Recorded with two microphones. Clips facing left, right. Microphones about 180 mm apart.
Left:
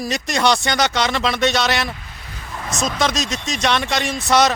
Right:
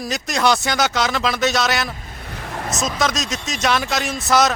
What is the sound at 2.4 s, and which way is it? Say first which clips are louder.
Vehicle: right 3 dB; 60° right (ahead or behind).